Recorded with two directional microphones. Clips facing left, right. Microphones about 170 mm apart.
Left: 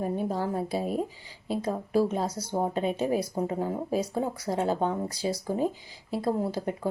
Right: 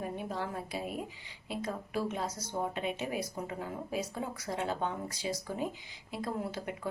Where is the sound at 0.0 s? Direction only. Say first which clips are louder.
Left 8 dB; 35° left (ahead or behind).